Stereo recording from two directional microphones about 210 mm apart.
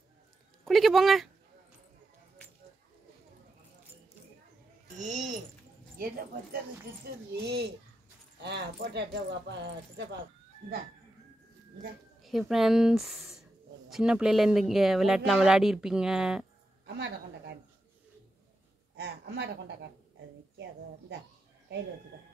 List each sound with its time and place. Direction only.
0.7 s speech: centre (ahead or behind)
4.9 s speech: 35° right (ahead or behind)
5.9 s speech: 45° right (ahead or behind)
12.2 s speech: centre (ahead or behind)
16.8 s a woman's voice: 50° right (ahead or behind)
18.9 s speech: 55° right (ahead or behind)